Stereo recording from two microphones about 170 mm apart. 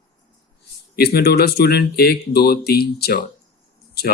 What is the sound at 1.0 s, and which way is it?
Speech, 70° left (ahead or behind).